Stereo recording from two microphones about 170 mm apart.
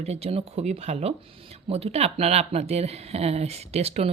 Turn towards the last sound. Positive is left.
turn(degrees=-40)  # may be behind; listen again after turning